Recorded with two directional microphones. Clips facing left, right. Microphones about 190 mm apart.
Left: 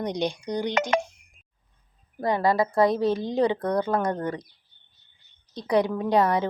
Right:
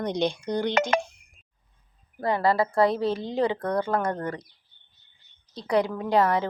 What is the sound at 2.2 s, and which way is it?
A woman's voice, 15° left (ahead or behind).